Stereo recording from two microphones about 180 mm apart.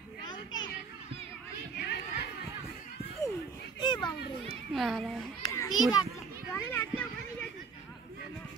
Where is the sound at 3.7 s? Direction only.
25° left (ahead or behind).